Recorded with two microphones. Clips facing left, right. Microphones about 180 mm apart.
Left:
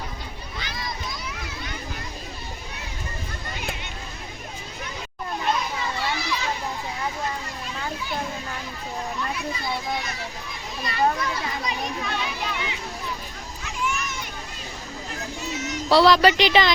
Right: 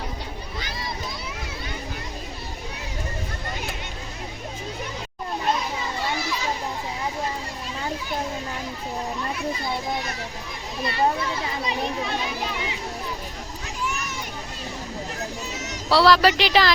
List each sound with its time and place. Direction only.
10.8 s children playing: 25° right (ahead or behind)
15.5 s a sound: 40° right (ahead or behind)
15.9 s speech: centre (ahead or behind)